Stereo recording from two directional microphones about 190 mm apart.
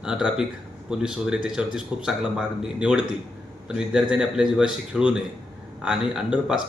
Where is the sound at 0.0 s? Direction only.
5° right (ahead or behind).